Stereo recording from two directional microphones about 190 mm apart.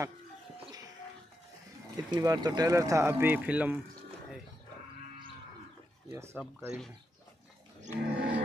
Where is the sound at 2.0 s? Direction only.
20° right (ahead or behind).